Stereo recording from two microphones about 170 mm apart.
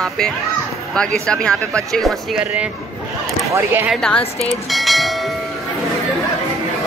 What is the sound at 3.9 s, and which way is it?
Speech, 5° left (ahead or behind).